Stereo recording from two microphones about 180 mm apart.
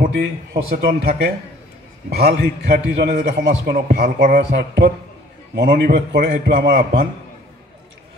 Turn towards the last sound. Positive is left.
turn(degrees=-55)  # may be behind; listen again after turning